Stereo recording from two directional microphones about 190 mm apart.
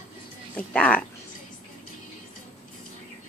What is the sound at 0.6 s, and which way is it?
Speech, 5° left (ahead or behind).